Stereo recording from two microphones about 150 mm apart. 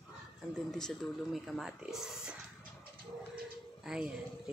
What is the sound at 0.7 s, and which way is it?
Speech, 5° left (ahead or behind).